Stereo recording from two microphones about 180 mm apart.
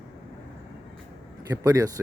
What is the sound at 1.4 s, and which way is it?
Speech, 20° right (ahead or behind).